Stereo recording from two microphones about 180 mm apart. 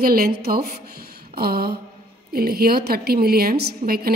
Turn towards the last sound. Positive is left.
turn(degrees=-60)  # may be behind; listen again after turning